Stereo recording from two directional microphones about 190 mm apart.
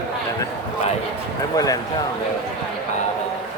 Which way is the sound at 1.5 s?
20° left (ahead or behind).